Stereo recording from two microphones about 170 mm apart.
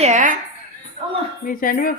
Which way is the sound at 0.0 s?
45° right (ahead or behind).